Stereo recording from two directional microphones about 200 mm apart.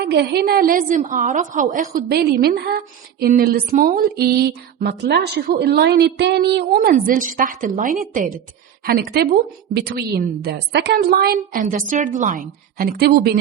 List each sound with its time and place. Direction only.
0.0 s a woman's voice: 55° right (ahead or behind)